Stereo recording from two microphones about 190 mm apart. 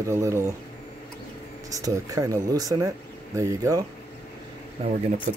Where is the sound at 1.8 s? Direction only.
15° right (ahead or behind).